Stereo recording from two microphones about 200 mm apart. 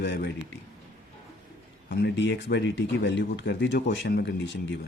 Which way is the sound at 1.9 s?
60° left (ahead or behind).